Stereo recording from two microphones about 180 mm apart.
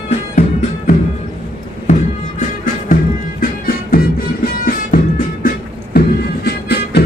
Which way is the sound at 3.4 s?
55° left (ahead or behind).